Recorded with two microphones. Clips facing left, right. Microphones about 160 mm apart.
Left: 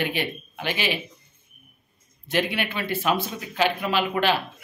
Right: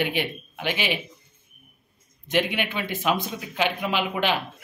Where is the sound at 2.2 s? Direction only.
15° right (ahead or behind).